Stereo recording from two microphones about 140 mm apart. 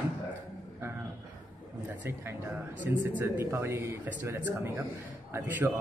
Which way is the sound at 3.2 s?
20° right (ahead or behind).